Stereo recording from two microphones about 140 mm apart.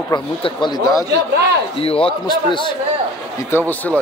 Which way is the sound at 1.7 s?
40° left (ahead or behind).